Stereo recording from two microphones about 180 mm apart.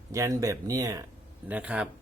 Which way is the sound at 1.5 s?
5° right (ahead or behind).